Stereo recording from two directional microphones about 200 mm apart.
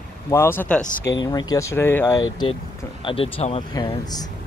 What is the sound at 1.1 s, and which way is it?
Speech, 20° left (ahead or behind).